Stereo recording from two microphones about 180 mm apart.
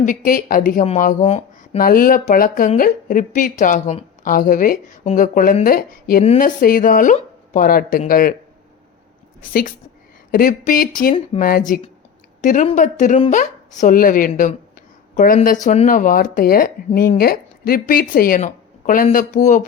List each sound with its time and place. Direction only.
0.0 s speech: 45° left (ahead or behind)
1.8 s speech: 50° left (ahead or behind)
9.4 s speech: 50° left (ahead or behind)